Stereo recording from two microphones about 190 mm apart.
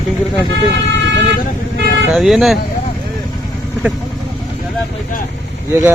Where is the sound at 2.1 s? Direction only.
Centre (ahead or behind).